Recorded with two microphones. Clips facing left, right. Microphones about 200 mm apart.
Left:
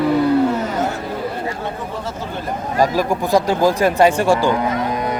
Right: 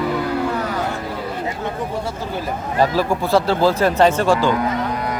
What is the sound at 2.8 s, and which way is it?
Speech, 15° left (ahead or behind).